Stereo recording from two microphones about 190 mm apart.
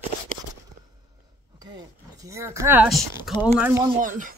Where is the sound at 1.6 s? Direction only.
20° right (ahead or behind).